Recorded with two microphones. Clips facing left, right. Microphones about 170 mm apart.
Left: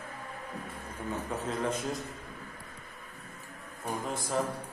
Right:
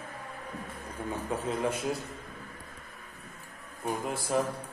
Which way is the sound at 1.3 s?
10° right (ahead or behind).